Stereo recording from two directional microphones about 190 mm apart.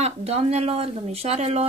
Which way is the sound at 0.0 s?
35° right (ahead or behind).